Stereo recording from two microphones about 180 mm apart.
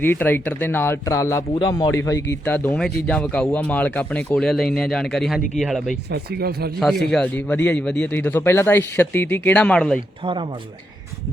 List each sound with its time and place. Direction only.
0.0 s a man's voice: 10° left (ahead or behind)
2.3 s speech: 10° left (ahead or behind)
6.1 s speech: 60° right (ahead or behind)
6.7 s speech: centre (ahead or behind)